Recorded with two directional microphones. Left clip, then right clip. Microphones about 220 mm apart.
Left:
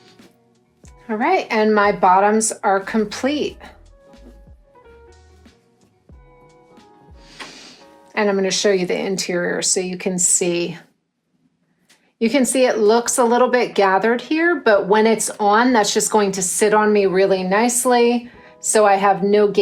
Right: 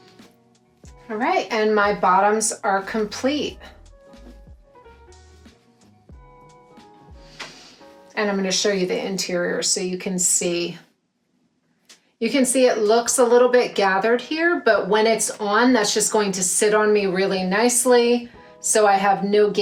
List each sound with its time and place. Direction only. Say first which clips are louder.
0.8 s speech: left 4 dB; 25° left (ahead or behind)
4.7 s music: left 2 dB; centre (ahead or behind)
7.2 s music: left 2 dB; 25° left (ahead or behind)
8.1 s speech: left 4 dB; 25° left (ahead or behind)
12.2 s speech: left 2 dB; 20° left (ahead or behind)